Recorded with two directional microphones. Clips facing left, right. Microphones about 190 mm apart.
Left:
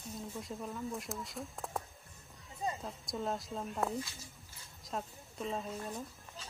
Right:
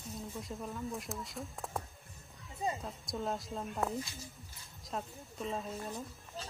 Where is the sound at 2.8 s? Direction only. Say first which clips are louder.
Even; centre (ahead or behind).